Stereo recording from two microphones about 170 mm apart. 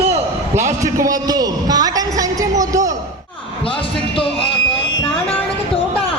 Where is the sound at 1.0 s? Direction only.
20° right (ahead or behind).